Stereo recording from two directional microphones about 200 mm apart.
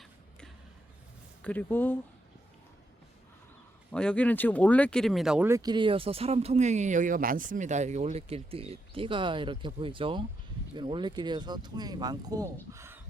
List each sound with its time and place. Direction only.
1.4 s speech: 5° left (ahead or behind)
3.9 s speech: 5° left (ahead or behind); by 12.5 s 20° right (ahead or behind)
12.7 s a sound: 15° right (ahead or behind)